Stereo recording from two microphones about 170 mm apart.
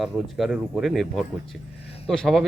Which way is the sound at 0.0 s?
Centre (ahead or behind).